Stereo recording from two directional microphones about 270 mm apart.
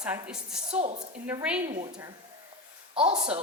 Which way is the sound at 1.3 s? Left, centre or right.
Centre.